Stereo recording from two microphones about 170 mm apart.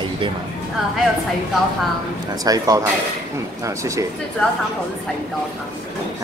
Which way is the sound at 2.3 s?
20° right (ahead or behind).